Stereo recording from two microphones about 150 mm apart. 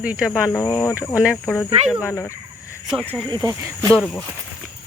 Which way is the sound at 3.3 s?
25° right (ahead or behind).